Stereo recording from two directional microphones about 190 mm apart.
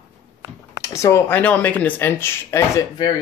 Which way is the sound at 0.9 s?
15° left (ahead or behind).